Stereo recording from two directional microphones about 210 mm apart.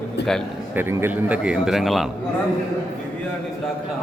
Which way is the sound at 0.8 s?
10° right (ahead or behind).